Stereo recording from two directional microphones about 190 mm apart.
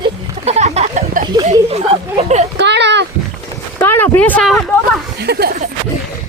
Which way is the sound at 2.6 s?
65° right (ahead or behind).